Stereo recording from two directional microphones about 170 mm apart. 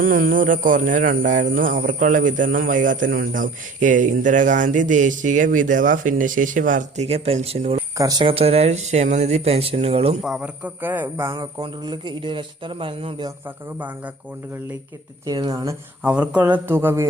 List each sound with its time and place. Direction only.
0.0 s speech: 55° right (ahead or behind); by 7.8 s 35° right (ahead or behind)
7.9 s speech: 20° right (ahead or behind)
10.2 s speech: 5° right (ahead or behind)
11.6 s a man's voice: 30° right (ahead or behind)
15.3 s a man's voice: 20° right (ahead or behind)
16.0 s speech: 5° right (ahead or behind)